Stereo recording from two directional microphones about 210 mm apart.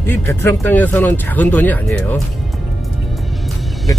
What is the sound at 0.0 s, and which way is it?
Speech, 10° left (ahead or behind).